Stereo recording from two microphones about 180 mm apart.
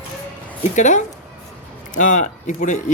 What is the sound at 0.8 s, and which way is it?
Speech, 40° left (ahead or behind).